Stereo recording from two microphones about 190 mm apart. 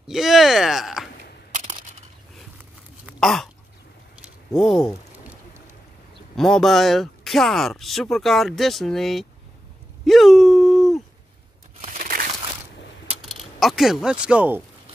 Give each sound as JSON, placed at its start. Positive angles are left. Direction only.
{"t": 0.0, "sound": "speech", "side_deg": 0}
{"t": 3.1, "sound": "a sound", "side_deg": 0}
{"t": 4.6, "sound": "speech", "side_deg": 0}
{"t": 6.3, "sound": "speech", "side_deg": 0}
{"t": 10.0, "sound": "a sound", "side_deg": 0}
{"t": 11.8, "sound": "crumpling", "side_deg": -40}
{"t": 13.2, "sound": "mechanisms", "side_deg": 0}
{"t": 14.2, "sound": "speech", "side_deg": -5}